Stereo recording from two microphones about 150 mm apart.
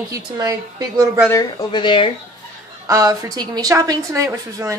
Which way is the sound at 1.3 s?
30° left (ahead or behind).